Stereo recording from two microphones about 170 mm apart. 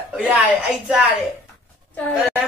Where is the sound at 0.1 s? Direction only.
5° right (ahead or behind).